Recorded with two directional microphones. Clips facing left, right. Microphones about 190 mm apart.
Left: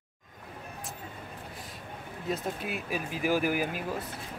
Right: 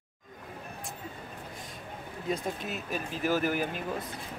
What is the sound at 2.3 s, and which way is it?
Speech, 10° left (ahead or behind).